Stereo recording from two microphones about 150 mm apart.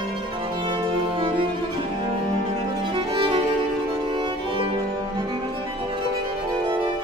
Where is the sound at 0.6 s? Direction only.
35° right (ahead or behind).